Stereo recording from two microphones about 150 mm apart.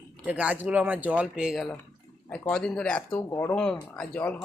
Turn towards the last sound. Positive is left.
turn(degrees=10)  # may be behind; listen again after turning